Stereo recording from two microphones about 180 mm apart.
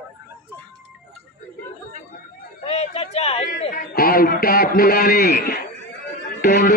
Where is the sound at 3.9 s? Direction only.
55° left (ahead or behind).